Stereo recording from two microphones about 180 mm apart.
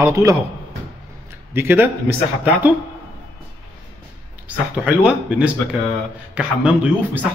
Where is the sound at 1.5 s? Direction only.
10° right (ahead or behind).